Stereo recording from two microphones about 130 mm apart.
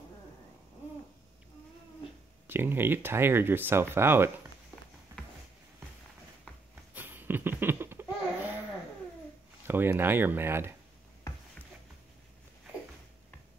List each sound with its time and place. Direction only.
2.4 s speech: 15° right (ahead or behind)
6.7 s laughter: 15° right (ahead or behind)
9.7 s speech: 15° right (ahead or behind)